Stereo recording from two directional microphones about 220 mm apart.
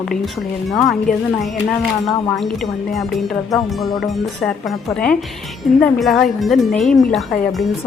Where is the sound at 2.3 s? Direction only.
Centre (ahead or behind).